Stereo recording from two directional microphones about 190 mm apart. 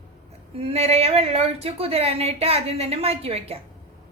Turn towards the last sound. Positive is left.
turn(degrees=-30)  # may be behind; listen again after turning